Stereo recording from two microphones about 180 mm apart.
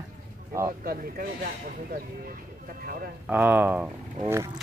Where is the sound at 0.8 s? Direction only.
55° right (ahead or behind).